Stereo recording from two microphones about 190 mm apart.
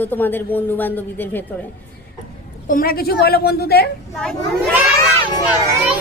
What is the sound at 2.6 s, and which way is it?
A woman's voice, 50° left (ahead or behind).